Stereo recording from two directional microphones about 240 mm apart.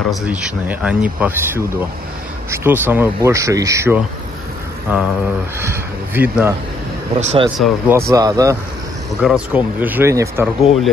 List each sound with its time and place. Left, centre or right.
0.1 s speech: centre
7.2 s speech: right
7.5 s speech: centre
8.0 s speech: centre